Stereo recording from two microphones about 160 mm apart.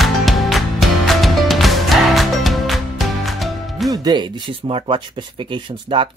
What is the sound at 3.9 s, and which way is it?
Speech, 25° right (ahead or behind).